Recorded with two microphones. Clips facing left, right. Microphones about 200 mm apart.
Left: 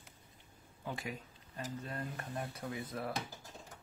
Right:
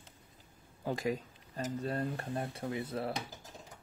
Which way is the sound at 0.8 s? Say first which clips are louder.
Right 8 dB; 40° right (ahead or behind).